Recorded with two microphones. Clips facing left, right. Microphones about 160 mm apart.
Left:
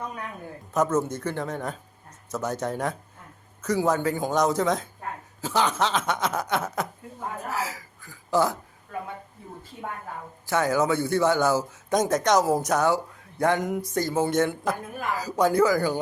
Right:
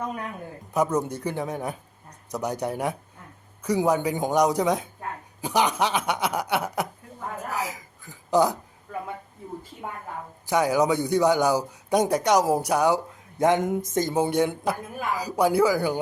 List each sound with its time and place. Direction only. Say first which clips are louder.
0.7 s speech: even; 10° right (ahead or behind)
10.4 s speech: right 2 dB; 15° right (ahead or behind)